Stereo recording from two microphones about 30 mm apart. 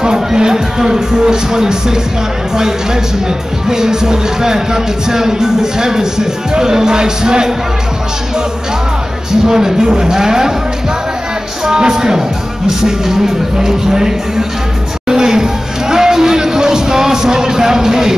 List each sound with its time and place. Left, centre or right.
0.0 s speech: right
9.5 s speech: centre
11.6 s speech: right
15.0 s a sound: centre